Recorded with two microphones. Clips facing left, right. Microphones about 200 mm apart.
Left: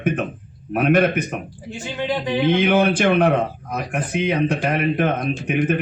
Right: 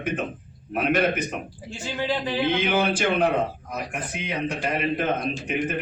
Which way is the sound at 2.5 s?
55° left (ahead or behind).